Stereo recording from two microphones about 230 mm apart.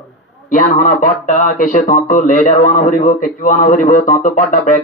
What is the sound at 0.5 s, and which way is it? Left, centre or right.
Speech, left.